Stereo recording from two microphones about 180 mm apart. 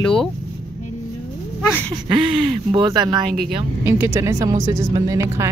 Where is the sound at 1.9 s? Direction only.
25° right (ahead or behind).